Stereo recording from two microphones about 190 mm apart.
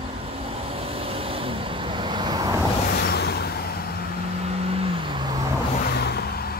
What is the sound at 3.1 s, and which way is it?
Vehicle, 60° left (ahead or behind).